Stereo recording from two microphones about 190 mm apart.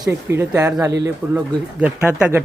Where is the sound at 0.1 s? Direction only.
15° right (ahead or behind).